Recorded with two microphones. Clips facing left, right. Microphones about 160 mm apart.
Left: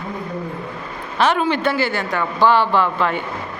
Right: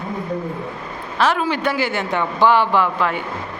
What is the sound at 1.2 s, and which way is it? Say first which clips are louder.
A man's voice: left 1 dB; centre (ahead or behind).